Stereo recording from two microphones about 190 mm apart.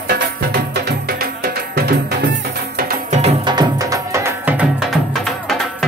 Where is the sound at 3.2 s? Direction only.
35° right (ahead or behind).